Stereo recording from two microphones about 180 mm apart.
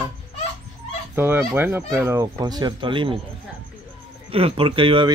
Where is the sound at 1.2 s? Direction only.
10° right (ahead or behind); by 3.1 s 30° right (ahead or behind).